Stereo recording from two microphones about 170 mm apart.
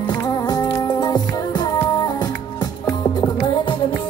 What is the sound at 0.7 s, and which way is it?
Music, 25° left (ahead or behind).